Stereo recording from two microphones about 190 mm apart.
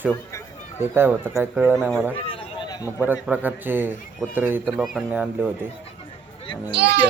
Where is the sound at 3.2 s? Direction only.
10° right (ahead or behind).